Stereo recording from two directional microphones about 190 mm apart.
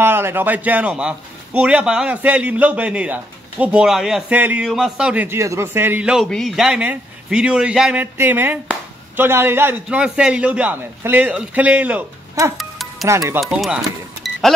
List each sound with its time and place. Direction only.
0.0 s a man's voice: 10° right (ahead or behind)
13.4 s speech: centre (ahead or behind)